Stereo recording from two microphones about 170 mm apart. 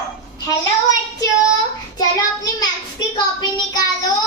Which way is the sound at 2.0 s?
25° left (ahead or behind).